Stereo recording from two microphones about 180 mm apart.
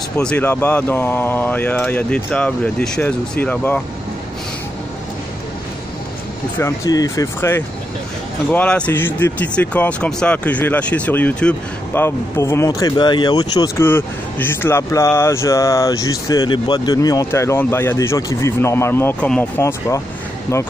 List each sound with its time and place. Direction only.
0.2 s speech: 10° left (ahead or behind)
6.6 s speech: 20° left (ahead or behind)